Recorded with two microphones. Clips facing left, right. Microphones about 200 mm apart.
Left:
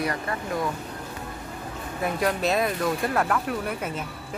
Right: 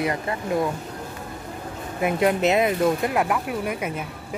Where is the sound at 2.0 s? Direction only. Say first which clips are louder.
Right 5 dB; 20° right (ahead or behind).